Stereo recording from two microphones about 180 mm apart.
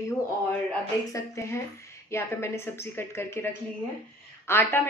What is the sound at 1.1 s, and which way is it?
A woman's voice, 20° left (ahead or behind).